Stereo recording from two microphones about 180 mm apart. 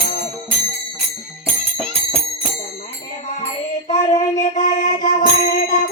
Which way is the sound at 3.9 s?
40° left (ahead or behind).